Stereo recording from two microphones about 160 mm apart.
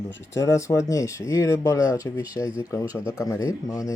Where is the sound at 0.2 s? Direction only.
15° left (ahead or behind).